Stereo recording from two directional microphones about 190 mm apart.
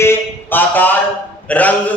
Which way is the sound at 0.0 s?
10° left (ahead or behind).